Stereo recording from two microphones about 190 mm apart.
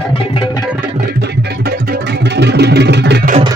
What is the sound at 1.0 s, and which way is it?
Music, 60° right (ahead or behind).